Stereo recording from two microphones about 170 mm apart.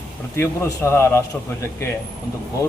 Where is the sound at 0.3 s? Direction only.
15° left (ahead or behind).